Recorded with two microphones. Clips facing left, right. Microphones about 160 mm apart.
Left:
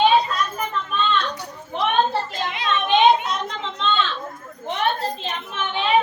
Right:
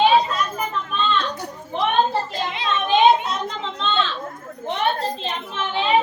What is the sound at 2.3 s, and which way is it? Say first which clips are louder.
Children playing: even; 30° right (ahead or behind).